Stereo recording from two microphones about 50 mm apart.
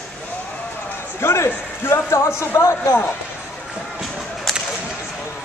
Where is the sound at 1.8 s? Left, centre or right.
Left.